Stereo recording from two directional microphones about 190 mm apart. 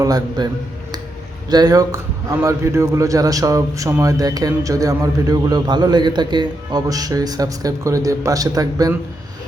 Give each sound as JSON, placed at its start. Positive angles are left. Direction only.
{"t": 0.0, "sound": "a man's voice", "side_deg": -20}
{"t": 1.5, "sound": "a man's voice", "side_deg": -20}